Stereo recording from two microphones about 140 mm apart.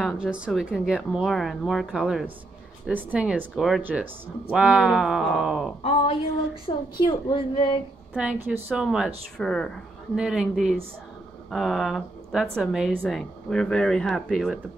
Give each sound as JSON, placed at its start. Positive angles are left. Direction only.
{"t": 0.0, "sound": "a woman's voice", "side_deg": 0}
{"t": 5.8, "sound": "a woman's voice", "side_deg": 45}
{"t": 8.2, "sound": "a woman's voice", "side_deg": -5}